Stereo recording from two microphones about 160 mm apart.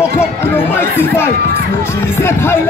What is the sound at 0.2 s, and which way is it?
Run, 15° left (ahead or behind).